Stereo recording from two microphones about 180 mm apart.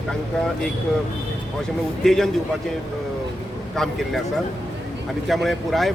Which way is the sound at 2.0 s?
Centre (ahead or behind).